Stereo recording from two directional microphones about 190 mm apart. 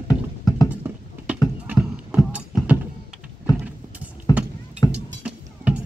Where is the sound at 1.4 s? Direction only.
5° right (ahead or behind).